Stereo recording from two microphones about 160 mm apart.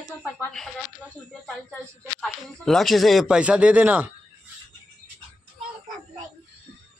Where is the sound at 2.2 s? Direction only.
Centre (ahead or behind).